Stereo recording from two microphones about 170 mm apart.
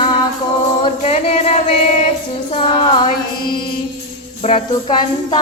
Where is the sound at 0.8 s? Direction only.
35° left (ahead or behind).